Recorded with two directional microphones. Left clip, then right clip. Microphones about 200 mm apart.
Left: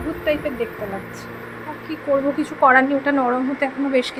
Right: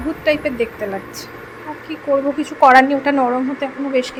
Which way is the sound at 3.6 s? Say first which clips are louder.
Even; centre (ahead or behind).